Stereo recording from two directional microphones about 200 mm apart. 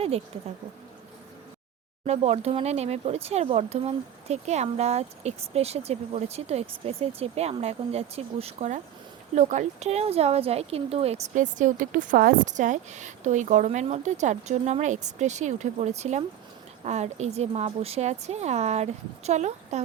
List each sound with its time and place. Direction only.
0.3 s speech: 30° right (ahead or behind)
2.0 s speech: 30° right (ahead or behind)